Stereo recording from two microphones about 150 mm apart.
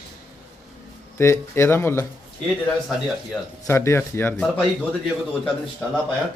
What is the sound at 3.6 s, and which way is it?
A man's voice, 15° left (ahead or behind).